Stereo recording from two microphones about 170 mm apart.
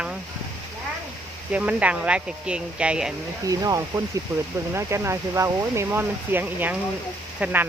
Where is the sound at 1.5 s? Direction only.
10° right (ahead or behind).